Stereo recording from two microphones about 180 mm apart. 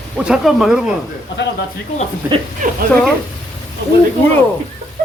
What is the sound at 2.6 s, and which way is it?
Speech, 45° right (ahead or behind).